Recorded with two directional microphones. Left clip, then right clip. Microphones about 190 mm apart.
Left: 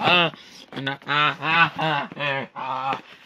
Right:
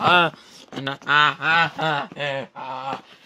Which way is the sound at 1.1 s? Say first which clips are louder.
Right 3 dB; 30° right (ahead or behind).